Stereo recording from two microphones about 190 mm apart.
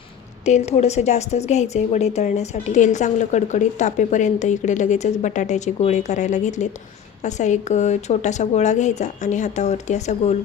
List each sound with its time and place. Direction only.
0.4 s speech: 35° left (ahead or behind)